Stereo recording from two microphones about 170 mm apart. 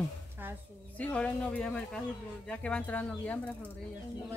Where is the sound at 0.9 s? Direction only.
5° left (ahead or behind).